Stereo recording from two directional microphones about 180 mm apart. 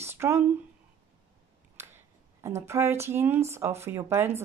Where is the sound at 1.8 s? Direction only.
15° right (ahead or behind).